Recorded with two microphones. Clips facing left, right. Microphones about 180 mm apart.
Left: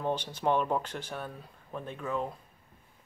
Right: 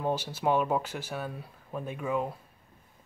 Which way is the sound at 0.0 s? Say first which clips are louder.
Right 1 dB; 10° right (ahead or behind).